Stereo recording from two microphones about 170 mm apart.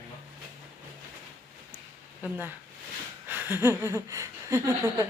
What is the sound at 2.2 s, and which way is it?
Speech, 10° right (ahead or behind).